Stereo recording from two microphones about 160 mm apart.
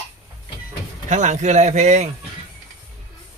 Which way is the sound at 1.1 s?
50° right (ahead or behind).